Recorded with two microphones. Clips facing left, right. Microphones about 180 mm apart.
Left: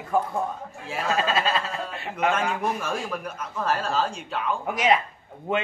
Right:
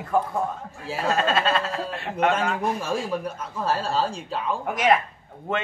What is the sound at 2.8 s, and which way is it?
Speech, 30° right (ahead or behind).